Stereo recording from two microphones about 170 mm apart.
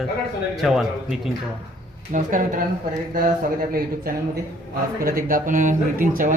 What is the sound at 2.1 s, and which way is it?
Speech, 50° right (ahead or behind).